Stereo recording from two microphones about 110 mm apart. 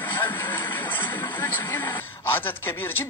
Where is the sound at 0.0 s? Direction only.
20° left (ahead or behind).